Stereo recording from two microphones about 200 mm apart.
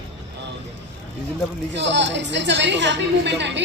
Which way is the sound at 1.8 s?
60° right (ahead or behind).